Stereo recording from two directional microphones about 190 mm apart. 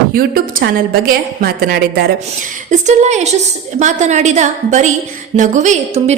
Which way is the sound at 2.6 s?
40° right (ahead or behind).